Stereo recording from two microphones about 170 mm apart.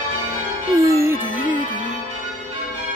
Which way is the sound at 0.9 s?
15° right (ahead or behind).